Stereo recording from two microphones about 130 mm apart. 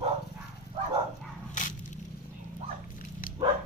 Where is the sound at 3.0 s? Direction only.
90° left.